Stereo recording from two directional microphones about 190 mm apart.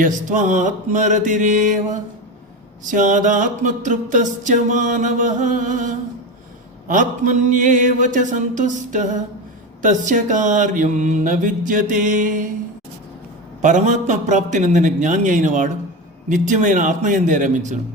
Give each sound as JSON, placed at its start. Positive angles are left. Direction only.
{"t": 0.0, "sound": "music", "side_deg": -40}
{"t": 9.8, "sound": "mantra", "side_deg": -45}
{"t": 13.6, "sound": "music", "side_deg": -40}